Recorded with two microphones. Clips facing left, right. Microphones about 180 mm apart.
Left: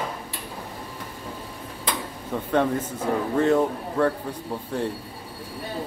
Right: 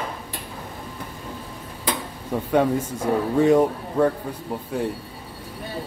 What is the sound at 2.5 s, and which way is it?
A man's voice, 10° right (ahead or behind).